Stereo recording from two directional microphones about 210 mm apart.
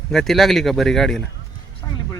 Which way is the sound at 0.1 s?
Centre (ahead or behind).